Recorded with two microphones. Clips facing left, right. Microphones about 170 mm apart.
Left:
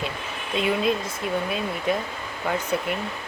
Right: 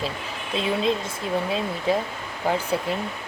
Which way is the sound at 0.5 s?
25° right (ahead or behind).